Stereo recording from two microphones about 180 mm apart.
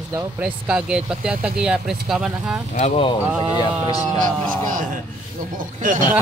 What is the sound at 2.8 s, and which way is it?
Speech, 35° left (ahead or behind).